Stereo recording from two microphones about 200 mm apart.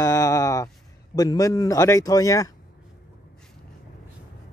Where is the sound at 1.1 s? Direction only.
20° left (ahead or behind).